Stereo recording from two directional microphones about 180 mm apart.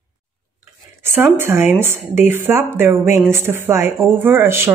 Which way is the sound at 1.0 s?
10° right (ahead or behind).